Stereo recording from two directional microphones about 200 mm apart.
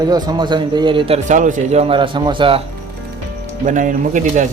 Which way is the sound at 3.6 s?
40° right (ahead or behind).